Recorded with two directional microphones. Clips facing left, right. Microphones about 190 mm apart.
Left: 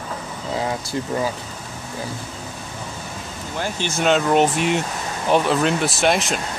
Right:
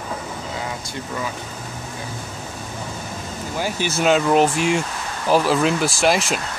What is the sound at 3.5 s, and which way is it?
Speech, 10° right (ahead or behind).